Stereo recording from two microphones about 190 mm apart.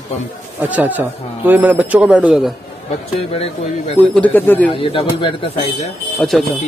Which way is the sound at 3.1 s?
30° left (ahead or behind).